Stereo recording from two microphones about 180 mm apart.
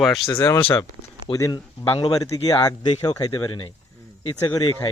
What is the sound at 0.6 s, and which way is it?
Speech, 30° left (ahead or behind).